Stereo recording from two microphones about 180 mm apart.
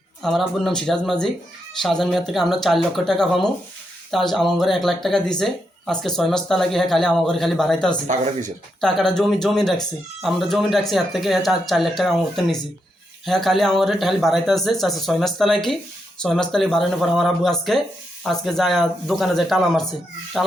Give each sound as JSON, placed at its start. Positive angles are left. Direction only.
{"t": 0.2, "sound": "speech", "side_deg": 0}
{"t": 8.0, "sound": "speech", "side_deg": -45}
{"t": 8.8, "sound": "speech", "side_deg": 0}